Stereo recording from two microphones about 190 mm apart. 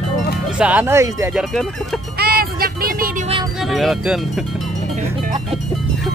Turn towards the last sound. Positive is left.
turn(degrees=-5)  # may be behind; listen again after turning